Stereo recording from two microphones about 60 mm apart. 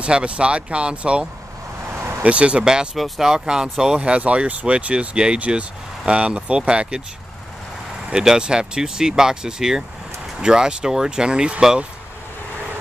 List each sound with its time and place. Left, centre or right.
0.0 s speech: centre
4.0 s speech: right
8.1 s speech: centre